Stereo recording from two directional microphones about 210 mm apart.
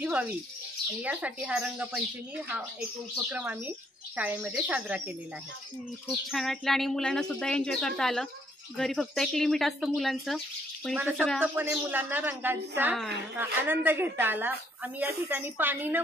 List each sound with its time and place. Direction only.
0.0 s speech: 5° right (ahead or behind)
3.3 s a woman's voice: 5° right (ahead or behind)
6.0 s a woman's voice: centre (ahead or behind)